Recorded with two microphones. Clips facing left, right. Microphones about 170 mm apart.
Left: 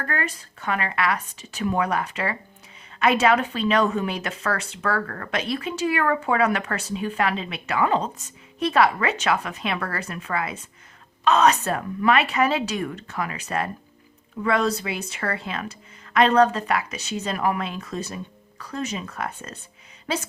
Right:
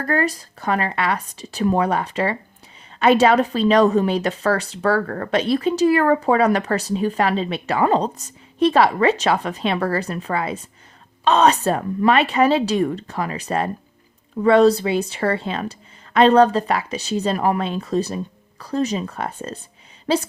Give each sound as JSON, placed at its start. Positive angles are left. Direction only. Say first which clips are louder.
{"t": 0.0, "sound": "speech", "louder": "right 8 dB", "side_deg": -35}